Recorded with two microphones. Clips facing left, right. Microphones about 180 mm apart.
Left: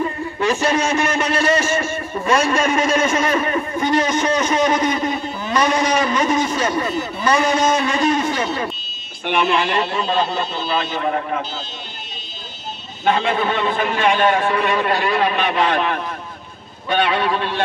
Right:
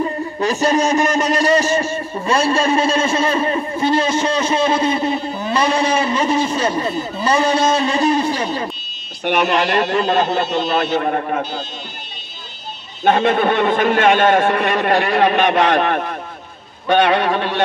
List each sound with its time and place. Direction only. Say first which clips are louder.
0.4 s a man's voice: right 2 dB; 40° right (ahead or behind); by 10.8 s 70° right (ahead or behind)
10.8 s a man's voice: right 3 dB; 50° right (ahead or behind)
13.0 s a man's voice: right 4 dB; 45° right (ahead or behind); by 14.0 s 65° right (ahead or behind)
14.0 s a man's voice: right 1 dB; 50° right (ahead or behind)
14.3 s a man's voice: right 3 dB; 65° right (ahead or behind)
15.3 s a man's voice: right 4 dB; 45° right (ahead or behind)